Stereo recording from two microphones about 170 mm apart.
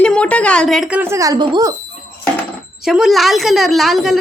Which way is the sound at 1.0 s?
15° right (ahead or behind).